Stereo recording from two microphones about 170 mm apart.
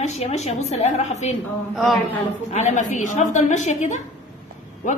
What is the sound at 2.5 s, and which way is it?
A woman's voice, 40° left (ahead or behind).